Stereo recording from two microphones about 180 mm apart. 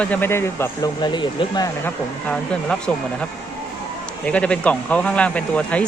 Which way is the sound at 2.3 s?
5° left (ahead or behind).